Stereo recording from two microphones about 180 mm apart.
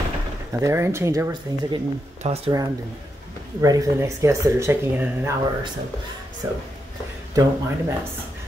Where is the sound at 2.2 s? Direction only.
35° right (ahead or behind).